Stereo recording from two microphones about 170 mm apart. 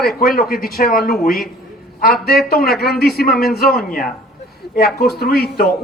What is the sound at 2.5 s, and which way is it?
A man's voice, 65° left (ahead or behind).